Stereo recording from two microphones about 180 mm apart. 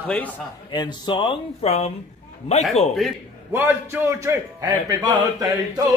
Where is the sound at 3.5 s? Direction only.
10° right (ahead or behind).